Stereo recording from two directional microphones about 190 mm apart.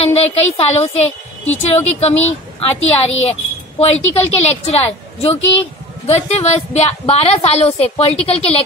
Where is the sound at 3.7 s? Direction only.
35° left (ahead or behind).